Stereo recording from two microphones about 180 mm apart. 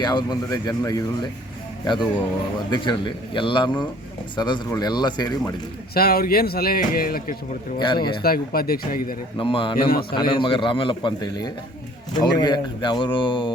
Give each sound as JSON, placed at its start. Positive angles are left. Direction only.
{"t": 0.0, "sound": "speech", "side_deg": 25}
{"t": 5.9, "sound": "speech", "side_deg": 55}
{"t": 7.8, "sound": "speech", "side_deg": 25}
{"t": 8.2, "sound": "speech", "side_deg": 55}
{"t": 9.4, "sound": "speech", "side_deg": 30}
{"t": 9.9, "sound": "speech", "side_deg": 60}
{"t": 10.4, "sound": "speech", "side_deg": 30}